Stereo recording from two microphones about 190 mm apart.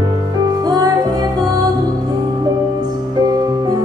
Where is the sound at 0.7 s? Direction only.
20° right (ahead or behind).